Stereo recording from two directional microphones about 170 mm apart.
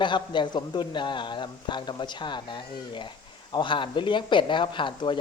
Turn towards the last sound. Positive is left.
turn(degrees=30)  # may be behind; listen again after turning